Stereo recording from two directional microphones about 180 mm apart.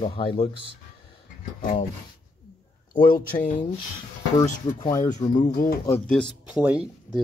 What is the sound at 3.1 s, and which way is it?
Speech, 50° left (ahead or behind).